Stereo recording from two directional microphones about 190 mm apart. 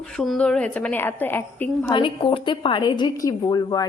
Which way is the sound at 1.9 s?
25° left (ahead or behind).